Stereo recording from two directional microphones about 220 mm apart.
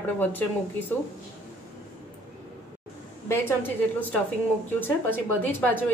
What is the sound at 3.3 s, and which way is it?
Speech, 10° left (ahead or behind).